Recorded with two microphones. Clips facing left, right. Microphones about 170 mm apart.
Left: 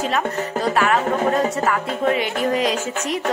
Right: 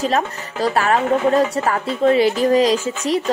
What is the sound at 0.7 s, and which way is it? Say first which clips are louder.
Speech: right 2 dB; 35° right (ahead or behind).